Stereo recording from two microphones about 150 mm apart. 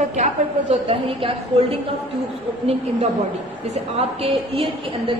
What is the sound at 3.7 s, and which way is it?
A woman's voice, 40° right (ahead or behind).